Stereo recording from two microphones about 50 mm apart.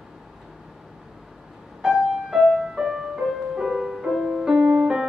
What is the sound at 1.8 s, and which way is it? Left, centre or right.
Music, centre.